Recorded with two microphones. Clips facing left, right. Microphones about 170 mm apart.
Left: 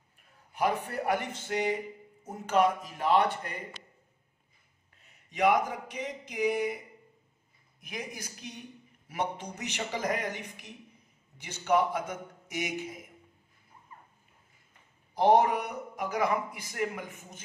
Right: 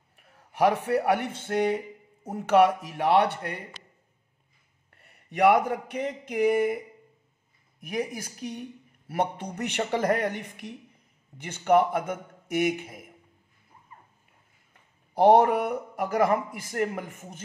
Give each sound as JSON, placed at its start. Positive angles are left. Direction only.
{"t": 0.2, "sound": "a man's voice", "side_deg": -75}
{"t": 1.4, "sound": "speech", "side_deg": -55}
{"t": 2.2, "sound": "a man's voice", "side_deg": -70}
{"t": 4.9, "sound": "a man's voice", "side_deg": -60}
{"t": 7.9, "sound": "speech", "side_deg": -55}
{"t": 15.1, "sound": "speech", "side_deg": -60}